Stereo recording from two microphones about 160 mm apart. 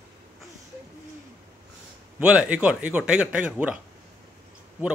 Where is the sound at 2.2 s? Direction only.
5° right (ahead or behind).